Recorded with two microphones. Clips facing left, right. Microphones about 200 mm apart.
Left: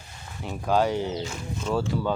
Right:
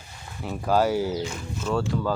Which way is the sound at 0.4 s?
5° right (ahead or behind).